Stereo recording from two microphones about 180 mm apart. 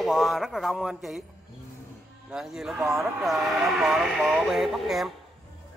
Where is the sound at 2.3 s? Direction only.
5° right (ahead or behind).